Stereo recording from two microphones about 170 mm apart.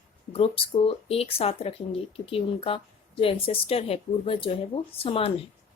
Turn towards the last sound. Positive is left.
turn(degrees=35)  # may be behind; listen again after turning